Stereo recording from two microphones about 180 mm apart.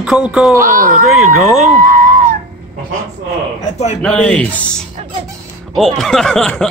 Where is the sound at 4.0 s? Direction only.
5° left (ahead or behind).